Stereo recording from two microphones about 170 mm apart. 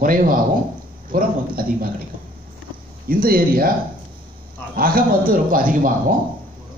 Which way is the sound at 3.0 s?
60° right (ahead or behind).